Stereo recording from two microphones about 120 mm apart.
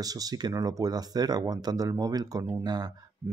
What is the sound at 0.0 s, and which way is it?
Speech, 30° right (ahead or behind).